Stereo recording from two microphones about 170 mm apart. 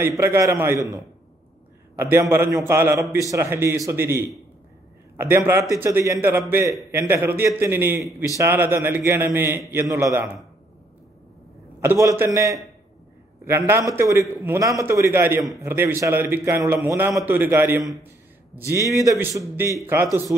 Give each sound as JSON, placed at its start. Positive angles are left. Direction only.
{"t": 0.2, "sound": "a man's voice", "side_deg": -15}
{"t": 11.8, "sound": "a man's voice", "side_deg": -15}
{"t": 18.0, "sound": "a sound", "side_deg": -15}
{"t": 18.9, "sound": "a man's voice", "side_deg": -20}